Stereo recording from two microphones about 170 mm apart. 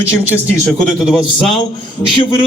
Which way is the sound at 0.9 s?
Centre (ahead or behind).